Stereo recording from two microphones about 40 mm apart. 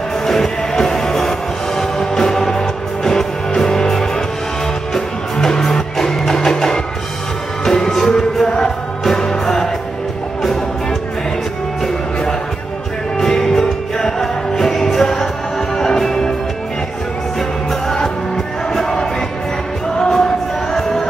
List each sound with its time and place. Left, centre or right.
0.3 s music: centre
13.2 s music: centre
17.4 s music: centre